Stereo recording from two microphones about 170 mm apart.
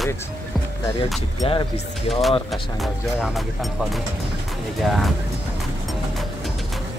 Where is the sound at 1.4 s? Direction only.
30° left (ahead or behind).